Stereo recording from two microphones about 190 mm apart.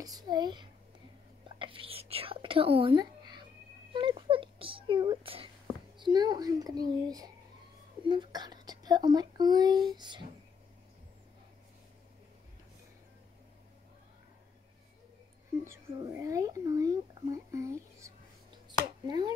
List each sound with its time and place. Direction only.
0.0 s speech: 20° right (ahead or behind)
1.6 s whispering: 30° right (ahead or behind)
3.9 s a sound: 25° right (ahead or behind)
5.9 s a child's voice: 25° right (ahead or behind)
15.6 s a child's voice: 15° right (ahead or behind)